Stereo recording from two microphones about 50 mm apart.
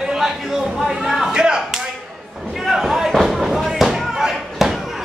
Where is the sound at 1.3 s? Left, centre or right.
Centre.